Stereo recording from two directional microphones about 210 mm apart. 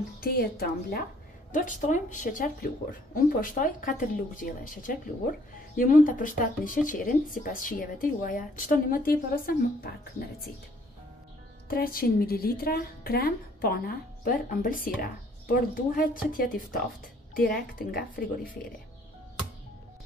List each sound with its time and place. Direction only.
0.2 s a woman's voice: 45° left (ahead or behind)
11.7 s a woman's voice: 45° left (ahead or behind)